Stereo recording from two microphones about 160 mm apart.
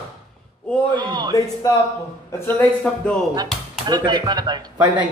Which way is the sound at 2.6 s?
5° left (ahead or behind).